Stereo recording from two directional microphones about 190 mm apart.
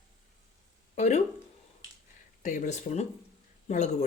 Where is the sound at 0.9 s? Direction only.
35° left (ahead or behind).